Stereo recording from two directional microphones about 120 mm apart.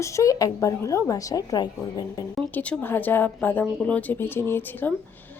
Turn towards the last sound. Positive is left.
turn(degrees=15)  # may be behind; listen again after turning